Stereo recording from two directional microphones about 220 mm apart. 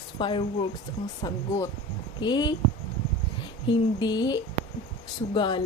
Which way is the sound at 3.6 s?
20° left (ahead or behind).